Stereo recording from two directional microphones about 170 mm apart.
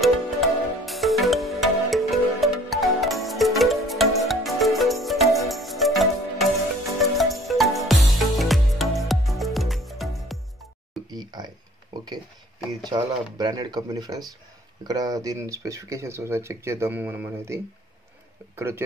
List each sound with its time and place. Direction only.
0.0 s music: centre (ahead or behind)
11.1 s a sound: 25° right (ahead or behind)
12.8 s speech: 25° right (ahead or behind)